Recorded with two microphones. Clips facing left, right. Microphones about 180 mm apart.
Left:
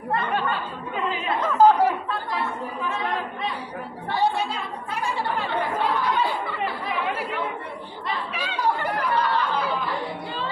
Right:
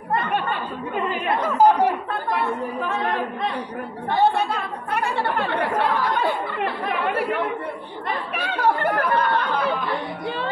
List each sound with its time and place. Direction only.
1.1 s speech: 60° right (ahead or behind)
1.4 s speech: 10° right (ahead or behind)
2.0 s chatter: 55° right (ahead or behind)
4.1 s chatter: 55° right (ahead or behind)
8.4 s speech: 60° right (ahead or behind)